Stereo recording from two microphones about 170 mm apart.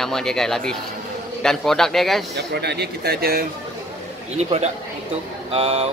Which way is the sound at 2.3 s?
80° right.